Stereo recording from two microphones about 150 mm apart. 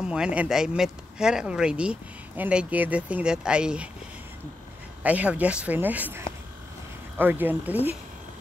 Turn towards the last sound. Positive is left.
turn(degrees=-10)  # may be behind; listen again after turning